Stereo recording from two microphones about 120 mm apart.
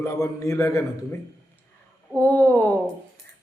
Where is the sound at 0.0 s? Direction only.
25° left (ahead or behind).